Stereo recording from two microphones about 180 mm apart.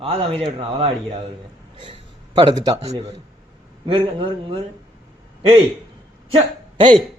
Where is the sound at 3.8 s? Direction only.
30° right (ahead or behind).